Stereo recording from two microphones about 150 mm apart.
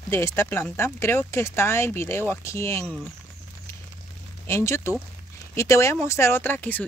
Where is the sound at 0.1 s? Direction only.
15° left (ahead or behind).